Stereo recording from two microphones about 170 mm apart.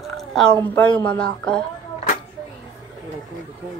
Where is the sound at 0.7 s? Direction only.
5° left (ahead or behind).